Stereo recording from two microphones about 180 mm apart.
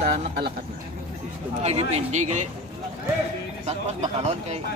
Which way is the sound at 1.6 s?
35° right (ahead or behind).